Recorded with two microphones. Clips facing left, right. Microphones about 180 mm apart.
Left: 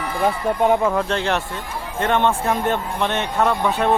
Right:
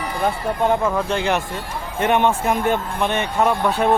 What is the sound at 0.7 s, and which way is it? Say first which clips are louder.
Speech: even; 5° left (ahead or behind).